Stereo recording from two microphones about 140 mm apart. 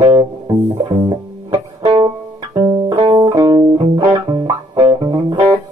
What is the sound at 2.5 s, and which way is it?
Music, 20° right (ahead or behind).